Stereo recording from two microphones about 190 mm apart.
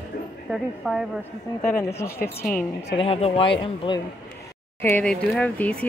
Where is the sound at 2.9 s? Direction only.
30° left (ahead or behind).